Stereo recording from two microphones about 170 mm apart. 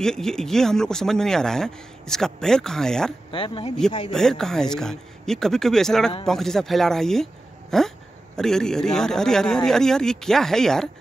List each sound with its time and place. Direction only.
0.0 s speech: 5° left (ahead or behind)
3.3 s speech: 30° left (ahead or behind)
4.1 s speech: 5° left (ahead or behind)